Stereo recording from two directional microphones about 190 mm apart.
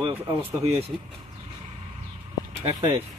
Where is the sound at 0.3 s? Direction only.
25° right (ahead or behind).